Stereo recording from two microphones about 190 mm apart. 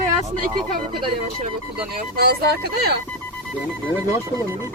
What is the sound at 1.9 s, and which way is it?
Speech, 55° right (ahead or behind).